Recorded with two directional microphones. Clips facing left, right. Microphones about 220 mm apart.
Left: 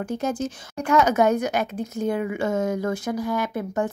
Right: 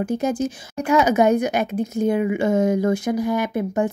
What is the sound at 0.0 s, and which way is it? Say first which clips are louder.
A woman's voice: right 4 dB; 10° right (ahead or behind).